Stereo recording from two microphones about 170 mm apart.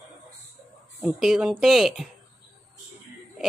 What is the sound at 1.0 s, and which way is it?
Speech, 5° right (ahead or behind).